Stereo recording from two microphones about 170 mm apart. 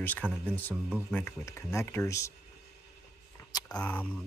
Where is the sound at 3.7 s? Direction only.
10° left (ahead or behind).